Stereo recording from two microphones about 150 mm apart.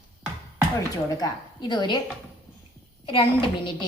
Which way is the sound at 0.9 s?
25° left (ahead or behind).